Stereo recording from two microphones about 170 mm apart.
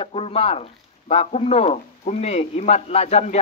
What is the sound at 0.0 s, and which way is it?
Speech, 35° left (ahead or behind).